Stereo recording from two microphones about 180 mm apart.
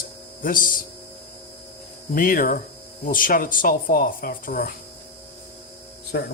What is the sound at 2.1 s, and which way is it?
Speech, 50° left (ahead or behind).